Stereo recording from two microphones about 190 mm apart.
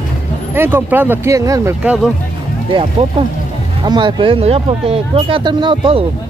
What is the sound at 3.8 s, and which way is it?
Speech, 25° right (ahead or behind).